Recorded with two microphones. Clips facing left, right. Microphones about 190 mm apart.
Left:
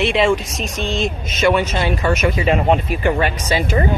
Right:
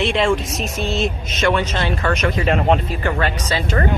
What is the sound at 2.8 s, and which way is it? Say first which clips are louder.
Speech: left 3 dB; 15° left (ahead or behind).